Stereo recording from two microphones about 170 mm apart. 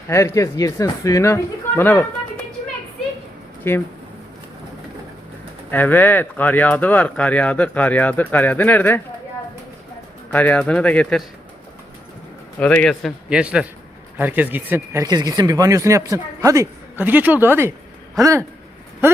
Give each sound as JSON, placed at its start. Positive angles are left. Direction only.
{"t": 0.1, "sound": "speech", "side_deg": 15}
{"t": 3.6, "sound": "speech", "side_deg": 10}
{"t": 5.7, "sound": "speech", "side_deg": 10}
{"t": 10.3, "sound": "speech", "side_deg": 10}
{"t": 12.5, "sound": "a man's voice", "side_deg": 10}
{"t": 15.0, "sound": "speech", "side_deg": -25}